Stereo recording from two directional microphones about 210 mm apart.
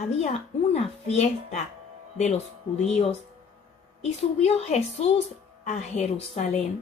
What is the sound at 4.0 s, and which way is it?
Speech, 30° left (ahead or behind).